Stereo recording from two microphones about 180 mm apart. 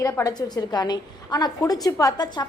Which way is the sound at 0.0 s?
20° left (ahead or behind).